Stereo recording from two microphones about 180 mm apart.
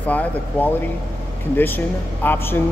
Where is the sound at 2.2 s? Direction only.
10° left (ahead or behind).